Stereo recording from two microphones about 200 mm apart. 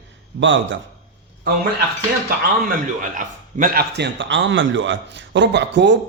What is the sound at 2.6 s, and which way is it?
A man's voice, 40° right (ahead or behind).